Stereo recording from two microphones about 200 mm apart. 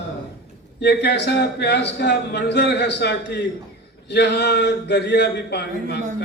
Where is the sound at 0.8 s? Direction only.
55° left (ahead or behind).